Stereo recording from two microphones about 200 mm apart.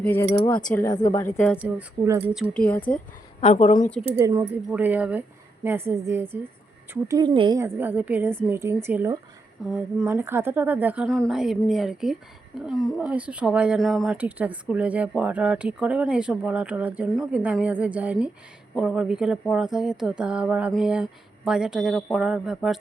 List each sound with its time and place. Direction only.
0.0 s speech: 10° left (ahead or behind)
1.5 s a woman's voice: 10° right (ahead or behind)
2.3 s speech: centre (ahead or behind)
3.4 s a woman's voice: 40° left (ahead or behind)
4.2 s a woman's voice: 15° right (ahead or behind)